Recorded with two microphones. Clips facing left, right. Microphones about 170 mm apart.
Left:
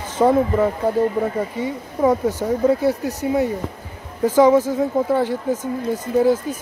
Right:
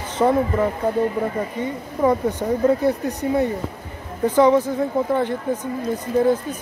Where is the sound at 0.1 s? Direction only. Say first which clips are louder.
Left 2 dB; 10° left (ahead or behind).